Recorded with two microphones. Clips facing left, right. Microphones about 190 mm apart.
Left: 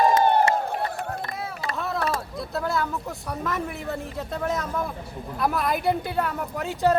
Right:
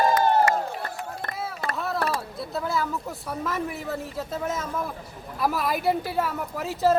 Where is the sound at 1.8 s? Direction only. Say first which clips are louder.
Left 1 dB; centre (ahead or behind).